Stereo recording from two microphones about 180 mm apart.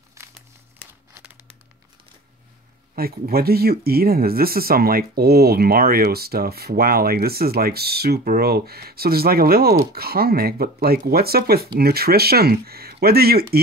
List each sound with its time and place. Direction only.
0.1 s crumpling: 15° right (ahead or behind)
3.0 s speech: 60° right (ahead or behind)